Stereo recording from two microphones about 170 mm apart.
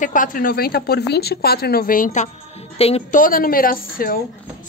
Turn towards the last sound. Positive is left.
turn(degrees=55)  # may be behind; listen again after turning